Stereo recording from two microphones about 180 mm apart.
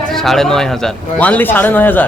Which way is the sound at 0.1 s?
Centre (ahead or behind).